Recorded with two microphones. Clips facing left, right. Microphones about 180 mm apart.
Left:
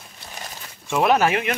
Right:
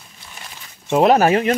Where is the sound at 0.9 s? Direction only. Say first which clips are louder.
Right 5 dB; 25° right (ahead or behind).